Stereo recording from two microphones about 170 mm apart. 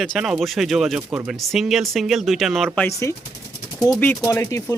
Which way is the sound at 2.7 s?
15° left (ahead or behind).